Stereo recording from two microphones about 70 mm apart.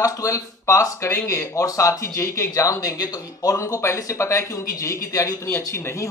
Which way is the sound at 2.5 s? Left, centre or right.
Left.